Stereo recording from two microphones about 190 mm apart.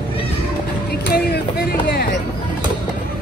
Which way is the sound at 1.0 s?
55° left (ahead or behind).